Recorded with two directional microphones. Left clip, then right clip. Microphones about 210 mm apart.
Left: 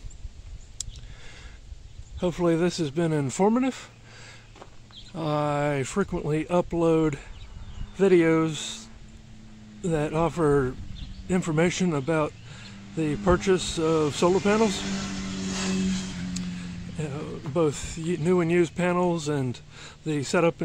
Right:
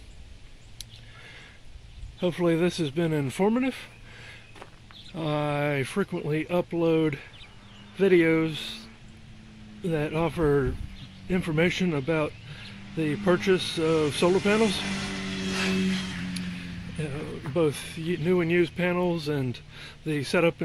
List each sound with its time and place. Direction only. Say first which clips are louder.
2.1 s speech: left 1 dB; 5° left (ahead or behind)
9.8 s speech: left 2 dB; 10° left (ahead or behind)
15.2 s vehicle: right 4 dB; 60° left (ahead or behind)
17.0 s speech: even; 5° left (ahead or behind)